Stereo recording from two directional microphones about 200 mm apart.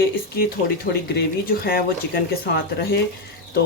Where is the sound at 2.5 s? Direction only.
50° left (ahead or behind).